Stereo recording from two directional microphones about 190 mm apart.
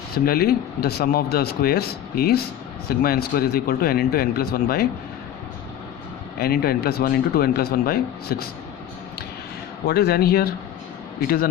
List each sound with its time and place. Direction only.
0.3 s speech: 55° left (ahead or behind)
6.4 s speech: 55° left (ahead or behind)
9.8 s speech: 55° left (ahead or behind)